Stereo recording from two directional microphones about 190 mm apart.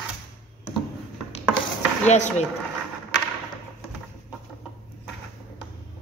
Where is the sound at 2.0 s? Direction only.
40° left (ahead or behind).